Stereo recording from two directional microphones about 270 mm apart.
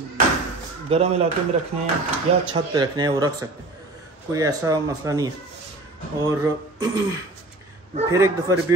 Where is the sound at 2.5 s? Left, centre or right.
Centre.